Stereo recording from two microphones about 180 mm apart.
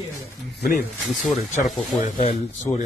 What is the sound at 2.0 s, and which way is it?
Speech, 35° left (ahead or behind).